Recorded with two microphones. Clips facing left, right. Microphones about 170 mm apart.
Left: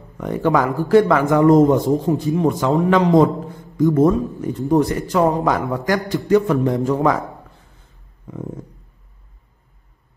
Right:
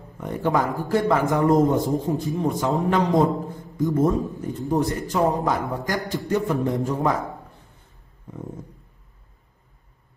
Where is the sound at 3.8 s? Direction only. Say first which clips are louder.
Left 6 dB; 75° left (ahead or behind).